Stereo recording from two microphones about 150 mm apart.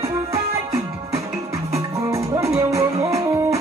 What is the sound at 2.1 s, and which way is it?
Music, 20° right (ahead or behind).